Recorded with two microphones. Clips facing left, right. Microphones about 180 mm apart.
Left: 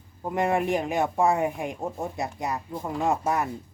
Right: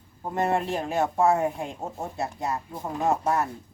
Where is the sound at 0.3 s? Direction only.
15° left (ahead or behind).